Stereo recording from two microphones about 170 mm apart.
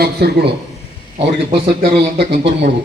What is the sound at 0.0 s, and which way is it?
Speech, 70° right (ahead or behind).